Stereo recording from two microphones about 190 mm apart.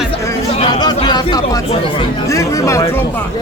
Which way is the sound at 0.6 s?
20° left (ahead or behind).